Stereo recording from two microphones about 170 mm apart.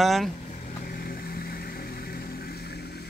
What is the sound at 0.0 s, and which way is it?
Speech, centre (ahead or behind).